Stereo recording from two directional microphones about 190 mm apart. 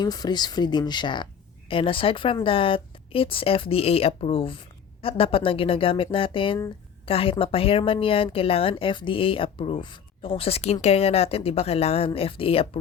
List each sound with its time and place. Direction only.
0.0 s speech: 20° left (ahead or behind)